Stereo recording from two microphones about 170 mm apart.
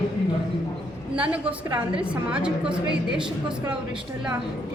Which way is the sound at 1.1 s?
10° right (ahead or behind).